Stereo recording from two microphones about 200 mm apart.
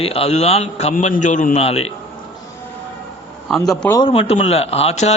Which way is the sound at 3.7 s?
10° left (ahead or behind).